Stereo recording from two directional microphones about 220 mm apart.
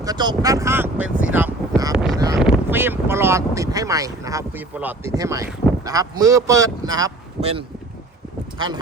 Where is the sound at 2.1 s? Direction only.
15° right (ahead or behind).